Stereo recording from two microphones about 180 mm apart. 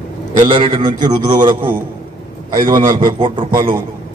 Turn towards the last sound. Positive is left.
turn(degrees=-25)  # may be behind; listen again after turning